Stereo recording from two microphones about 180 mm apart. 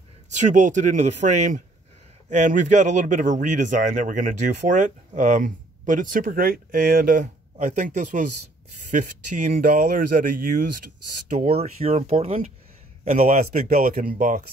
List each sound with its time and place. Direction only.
0.3 s speech: 40° right (ahead or behind)
11.3 s speech: 35° right (ahead or behind)
13.7 s speech: 55° right (ahead or behind)